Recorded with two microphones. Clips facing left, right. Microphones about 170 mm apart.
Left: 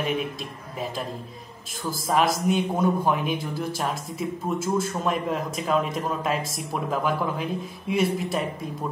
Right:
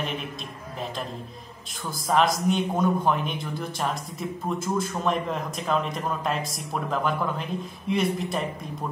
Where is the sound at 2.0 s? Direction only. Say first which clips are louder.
Even; 5° left (ahead or behind).